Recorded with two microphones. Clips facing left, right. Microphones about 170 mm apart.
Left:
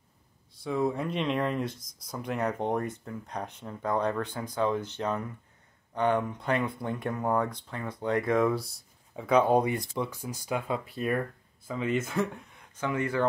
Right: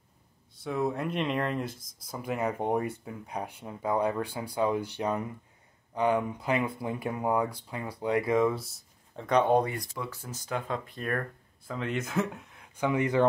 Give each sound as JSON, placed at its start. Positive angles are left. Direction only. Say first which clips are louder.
{"t": 0.7, "sound": "speech", "louder": "left 1 dB", "side_deg": 0}
{"t": 9.7, "sound": "speech", "louder": "left 5 dB", "side_deg": 20}
{"t": 12.7, "sound": "speech", "louder": "right 3 dB", "side_deg": -15}